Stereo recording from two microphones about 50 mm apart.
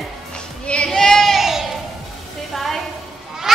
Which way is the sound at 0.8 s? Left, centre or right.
Centre.